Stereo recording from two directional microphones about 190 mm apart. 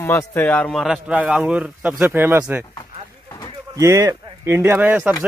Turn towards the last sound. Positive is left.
turn(degrees=-10)  # may be behind; listen again after turning